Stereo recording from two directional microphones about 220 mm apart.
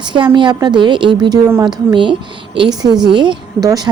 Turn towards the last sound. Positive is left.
turn(degrees=-15)  # may be behind; listen again after turning